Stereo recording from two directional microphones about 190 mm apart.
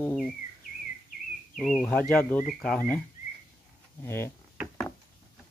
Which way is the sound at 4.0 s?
10° left (ahead or behind).